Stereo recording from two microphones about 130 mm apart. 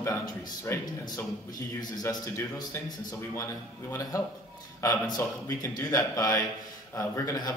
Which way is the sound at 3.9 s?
25° left (ahead or behind).